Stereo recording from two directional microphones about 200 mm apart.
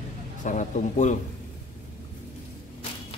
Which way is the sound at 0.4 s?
40° left (ahead or behind).